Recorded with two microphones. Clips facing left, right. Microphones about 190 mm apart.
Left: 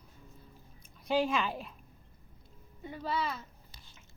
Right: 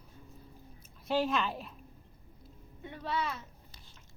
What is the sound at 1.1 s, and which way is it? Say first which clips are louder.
Speech: left 1 dB; centre (ahead or behind).